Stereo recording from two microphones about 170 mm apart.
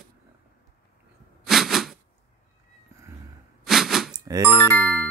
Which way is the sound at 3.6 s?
Centre (ahead or behind).